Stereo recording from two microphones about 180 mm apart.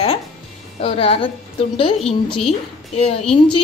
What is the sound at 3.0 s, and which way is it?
Speech, 35° left (ahead or behind).